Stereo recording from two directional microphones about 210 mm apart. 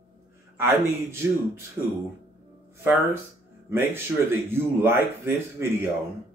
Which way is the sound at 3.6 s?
10° right (ahead or behind).